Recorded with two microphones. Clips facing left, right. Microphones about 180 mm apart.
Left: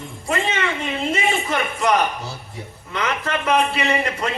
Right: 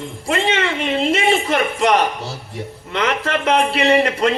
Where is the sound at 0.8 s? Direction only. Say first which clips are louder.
Right 5 dB; 75° right (ahead or behind).